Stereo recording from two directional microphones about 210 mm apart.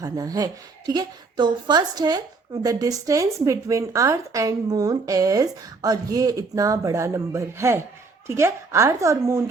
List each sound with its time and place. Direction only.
0.0 s a woman's voice: 15° right (ahead or behind)